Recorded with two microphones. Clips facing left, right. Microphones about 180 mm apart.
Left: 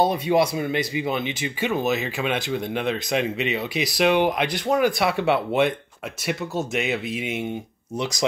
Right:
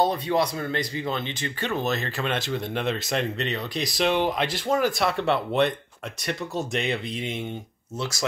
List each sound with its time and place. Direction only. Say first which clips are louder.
0.0 s speech: left 3 dB; 10° left (ahead or behind)